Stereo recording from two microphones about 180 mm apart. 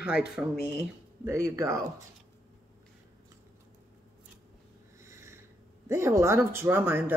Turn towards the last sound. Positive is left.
turn(degrees=-10)  # may be behind; listen again after turning